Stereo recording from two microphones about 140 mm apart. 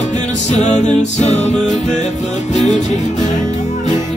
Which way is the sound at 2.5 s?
55° left (ahead or behind).